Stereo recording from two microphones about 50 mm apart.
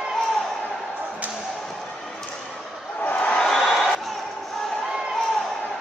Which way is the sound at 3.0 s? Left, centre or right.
Left.